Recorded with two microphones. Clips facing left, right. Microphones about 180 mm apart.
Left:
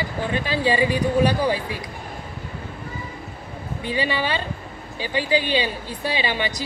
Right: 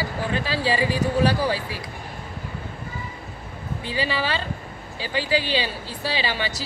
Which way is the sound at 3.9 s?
20° left (ahead or behind).